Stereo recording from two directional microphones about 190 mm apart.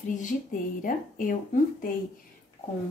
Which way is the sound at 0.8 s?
45° left (ahead or behind).